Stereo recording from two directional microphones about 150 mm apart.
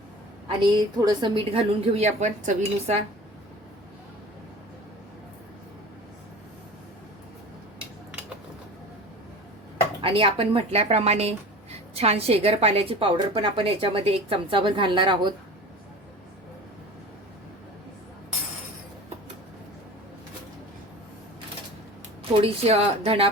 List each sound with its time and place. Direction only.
0.9 s a woman's voice: 30° right (ahead or behind); by 3.0 s 50° right (ahead or behind)
10.0 s a woman's voice: 35° right (ahead or behind)
22.4 s a woman's voice: 40° right (ahead or behind)